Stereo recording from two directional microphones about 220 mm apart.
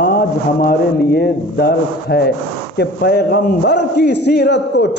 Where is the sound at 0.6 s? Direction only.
45° left (ahead or behind).